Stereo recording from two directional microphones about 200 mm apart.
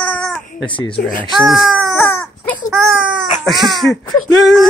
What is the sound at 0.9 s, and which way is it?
Speech, 45° left (ahead or behind).